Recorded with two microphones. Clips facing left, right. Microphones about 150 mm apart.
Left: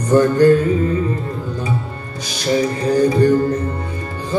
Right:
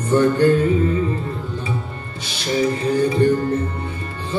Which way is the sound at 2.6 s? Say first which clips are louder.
Left 1 dB; 40° left (ahead or behind).